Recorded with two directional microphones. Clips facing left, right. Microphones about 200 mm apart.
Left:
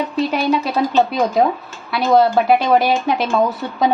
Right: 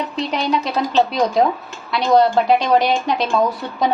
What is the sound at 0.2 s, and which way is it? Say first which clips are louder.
A woman's voice: left 3 dB; 5° left (ahead or behind).